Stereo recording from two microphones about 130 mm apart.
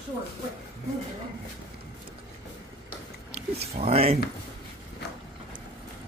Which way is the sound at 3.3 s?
50° right (ahead or behind).